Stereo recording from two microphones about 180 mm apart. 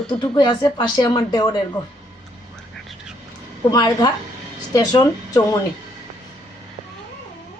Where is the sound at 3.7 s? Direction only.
25° left (ahead or behind).